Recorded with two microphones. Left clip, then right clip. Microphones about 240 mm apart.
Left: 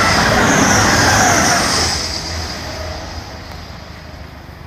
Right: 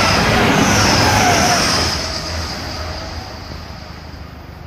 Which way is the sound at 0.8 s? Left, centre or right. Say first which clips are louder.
Left 1 dB; right.